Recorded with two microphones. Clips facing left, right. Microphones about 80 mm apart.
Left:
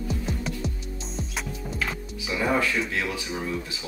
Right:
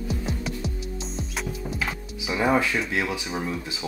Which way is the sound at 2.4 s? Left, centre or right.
Centre.